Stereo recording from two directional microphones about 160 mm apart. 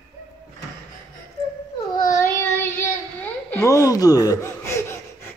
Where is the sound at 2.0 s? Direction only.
20° left (ahead or behind).